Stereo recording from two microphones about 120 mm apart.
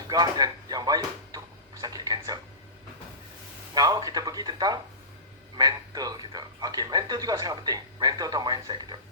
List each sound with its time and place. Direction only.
0.1 s speech: 35° right (ahead or behind)
3.8 s speech: 35° right (ahead or behind)